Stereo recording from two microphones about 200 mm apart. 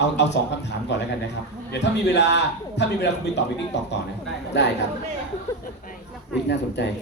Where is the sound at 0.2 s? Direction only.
60° left (ahead or behind).